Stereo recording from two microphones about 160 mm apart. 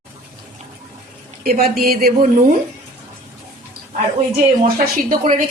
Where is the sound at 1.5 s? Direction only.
70° right (ahead or behind).